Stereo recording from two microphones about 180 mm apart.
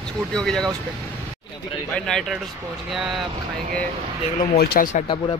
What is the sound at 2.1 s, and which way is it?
Speech, 5° left (ahead or behind).